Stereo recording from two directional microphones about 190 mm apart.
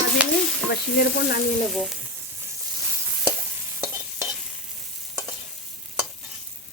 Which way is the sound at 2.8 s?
15° right (ahead or behind).